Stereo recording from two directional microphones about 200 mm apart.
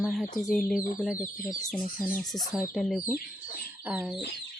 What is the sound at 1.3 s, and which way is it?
Speech, 15° left (ahead or behind).